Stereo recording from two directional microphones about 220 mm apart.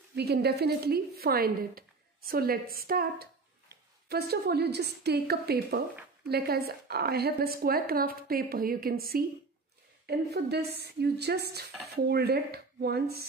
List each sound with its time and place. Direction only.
0.1 s speech: 45° right (ahead or behind)